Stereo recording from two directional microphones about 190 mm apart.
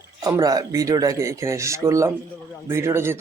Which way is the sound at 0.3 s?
20° right (ahead or behind).